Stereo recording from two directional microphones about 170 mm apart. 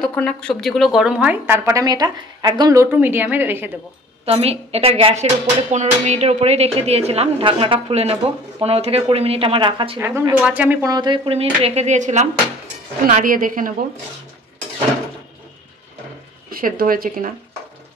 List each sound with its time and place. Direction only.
0.0 s a woman's voice: 5° left (ahead or behind); by 3.7 s 10° right (ahead or behind)
4.3 s speech: 35° right (ahead or behind)
9.9 s a woman's voice: 15° right (ahead or behind)
10.9 s speech: 25° right (ahead or behind); by 12.3 s 45° right (ahead or behind)
13.0 s a woman's voice: 55° right (ahead or behind)
16.4 s speech: 60° right (ahead or behind)